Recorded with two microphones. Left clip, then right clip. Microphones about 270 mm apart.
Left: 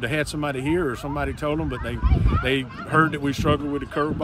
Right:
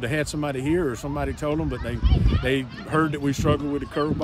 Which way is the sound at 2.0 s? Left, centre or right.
Centre.